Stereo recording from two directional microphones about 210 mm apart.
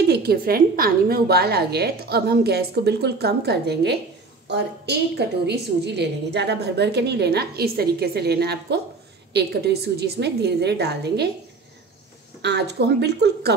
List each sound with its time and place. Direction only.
0.0 s a woman's voice: 50° right (ahead or behind)
12.4 s a woman's voice: 55° right (ahead or behind)